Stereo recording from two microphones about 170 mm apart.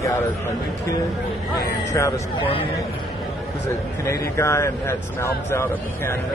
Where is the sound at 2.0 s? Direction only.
15° left (ahead or behind).